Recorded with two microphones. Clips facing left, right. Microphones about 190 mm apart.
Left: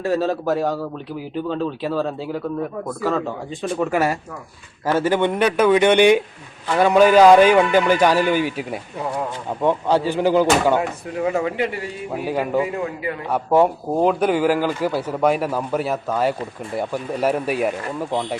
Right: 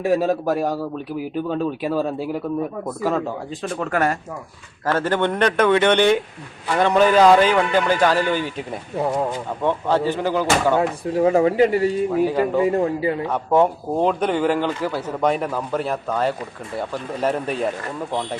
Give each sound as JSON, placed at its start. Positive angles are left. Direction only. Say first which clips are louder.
{"t": 0.0, "sound": "a man's voice", "louder": "right 2 dB", "side_deg": -10}
{"t": 3.6, "sound": "a man's voice", "louder": "left 2 dB", "side_deg": 10}
{"t": 11.1, "sound": "speech", "louder": "right 6 dB", "side_deg": -35}
{"t": 12.3, "sound": "a man's voice", "louder": "right 1 dB", "side_deg": 10}
{"t": 12.7, "sound": "speech", "louder": "right 6 dB", "side_deg": -30}
{"t": 13.3, "sound": "a man's voice", "louder": "left 3 dB", "side_deg": 5}